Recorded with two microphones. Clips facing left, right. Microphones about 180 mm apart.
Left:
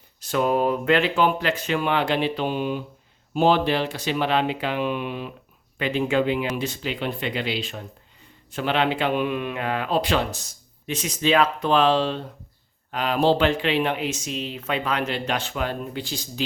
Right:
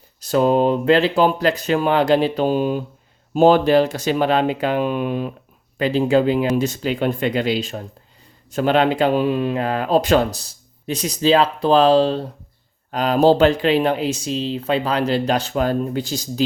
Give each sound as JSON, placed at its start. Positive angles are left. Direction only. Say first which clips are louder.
{"t": 0.2, "sound": "speech", "louder": "right 6 dB", "side_deg": -35}